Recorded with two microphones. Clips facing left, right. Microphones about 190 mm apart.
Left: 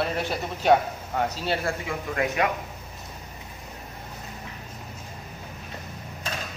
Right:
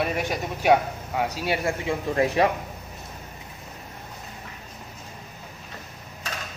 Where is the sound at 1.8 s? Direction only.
30° right (ahead or behind).